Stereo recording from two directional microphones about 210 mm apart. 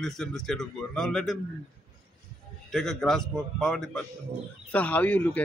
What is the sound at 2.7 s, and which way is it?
A man's voice, centre (ahead or behind).